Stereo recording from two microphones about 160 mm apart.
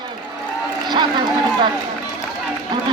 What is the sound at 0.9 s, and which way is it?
Run, 30° right (ahead or behind).